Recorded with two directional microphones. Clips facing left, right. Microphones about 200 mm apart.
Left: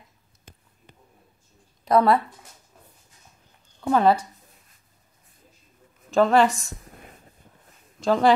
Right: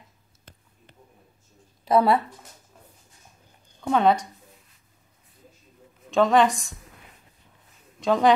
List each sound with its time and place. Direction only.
1.9 s a woman's voice: 5° right (ahead or behind)
3.8 s a woman's voice: 5° left (ahead or behind)
6.0 s a woman's voice: 5° left (ahead or behind)
6.9 s a sound: 45° left (ahead or behind)
8.0 s speech: centre (ahead or behind)